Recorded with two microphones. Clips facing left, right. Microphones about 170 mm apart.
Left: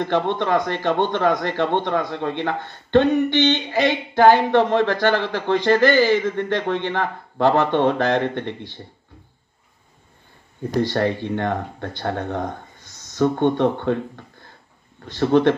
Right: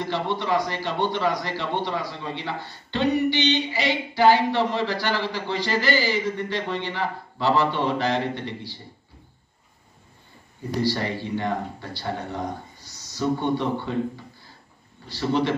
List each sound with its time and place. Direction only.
0.0 s a man's voice: 55° left (ahead or behind)
10.9 s speech: 55° left (ahead or behind)